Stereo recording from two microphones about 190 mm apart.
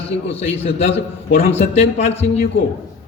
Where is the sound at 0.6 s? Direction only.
35° left (ahead or behind).